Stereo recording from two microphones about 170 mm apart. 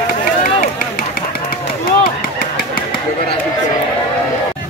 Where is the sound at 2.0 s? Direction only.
60° left (ahead or behind).